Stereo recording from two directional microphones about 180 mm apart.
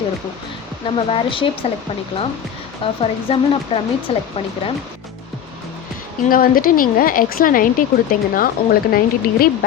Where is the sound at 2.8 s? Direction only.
30° left (ahead or behind).